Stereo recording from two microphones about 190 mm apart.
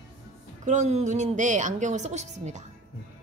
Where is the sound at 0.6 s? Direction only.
40° right (ahead or behind).